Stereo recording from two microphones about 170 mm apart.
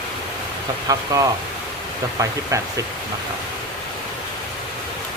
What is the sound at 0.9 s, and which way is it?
Speech, 20° right (ahead or behind).